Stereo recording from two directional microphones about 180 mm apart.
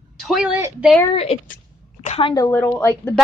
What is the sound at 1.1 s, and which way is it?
A woman's voice, 35° left (ahead or behind).